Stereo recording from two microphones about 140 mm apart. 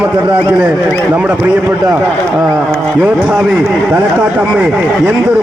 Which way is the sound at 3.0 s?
10° right (ahead or behind).